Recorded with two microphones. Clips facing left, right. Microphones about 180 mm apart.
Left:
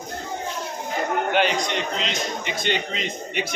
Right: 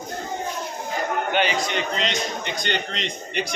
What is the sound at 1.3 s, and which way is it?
A man's voice, centre (ahead or behind).